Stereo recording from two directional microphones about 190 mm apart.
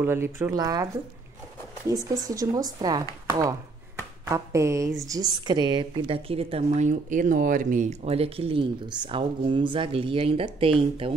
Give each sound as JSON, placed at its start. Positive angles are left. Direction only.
{"t": 0.0, "sound": "speech", "side_deg": -15}
{"t": 1.9, "sound": "a woman's voice", "side_deg": -20}